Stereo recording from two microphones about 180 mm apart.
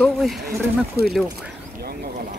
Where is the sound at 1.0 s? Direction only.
60° right (ahead or behind).